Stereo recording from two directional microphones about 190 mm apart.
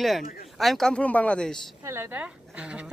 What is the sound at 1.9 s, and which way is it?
A woman's voice, 10° right (ahead or behind).